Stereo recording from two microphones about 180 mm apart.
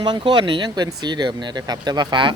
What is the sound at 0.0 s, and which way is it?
Speech, 25° right (ahead or behind).